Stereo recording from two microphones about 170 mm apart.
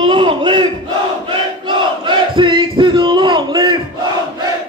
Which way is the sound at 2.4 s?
30° right (ahead or behind).